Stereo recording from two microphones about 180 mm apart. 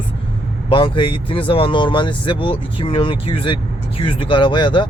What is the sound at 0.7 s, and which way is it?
Speech, 25° left (ahead or behind).